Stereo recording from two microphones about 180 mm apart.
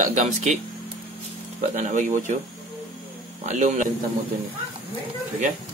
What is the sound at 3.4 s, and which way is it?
Speech, 40° right (ahead or behind).